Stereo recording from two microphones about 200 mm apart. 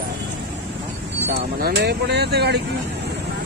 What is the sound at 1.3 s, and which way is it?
Speech, 50° right (ahead or behind).